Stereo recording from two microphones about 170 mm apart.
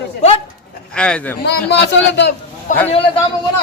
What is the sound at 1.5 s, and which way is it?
Speech, 80° left.